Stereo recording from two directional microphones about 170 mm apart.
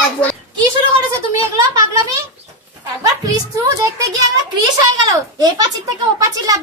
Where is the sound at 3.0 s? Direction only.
20° right (ahead or behind).